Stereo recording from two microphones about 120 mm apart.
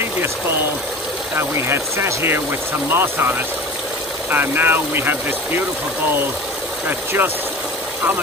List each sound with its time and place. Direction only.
0.0 s speech: 20° right (ahead or behind)
6.9 s speech: 20° right (ahead or behind)